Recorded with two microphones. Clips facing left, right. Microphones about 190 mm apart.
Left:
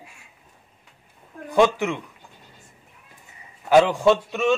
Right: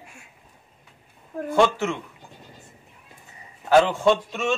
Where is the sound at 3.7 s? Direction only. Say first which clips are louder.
Left 1 dB; 15° left (ahead or behind).